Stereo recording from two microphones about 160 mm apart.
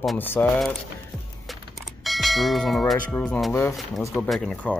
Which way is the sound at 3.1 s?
5° left (ahead or behind).